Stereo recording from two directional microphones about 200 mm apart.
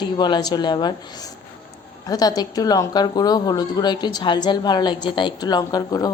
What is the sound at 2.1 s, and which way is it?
A woman's voice, 20° left (ahead or behind).